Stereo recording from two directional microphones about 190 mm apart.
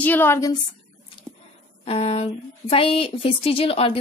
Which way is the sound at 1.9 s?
30° left (ahead or behind).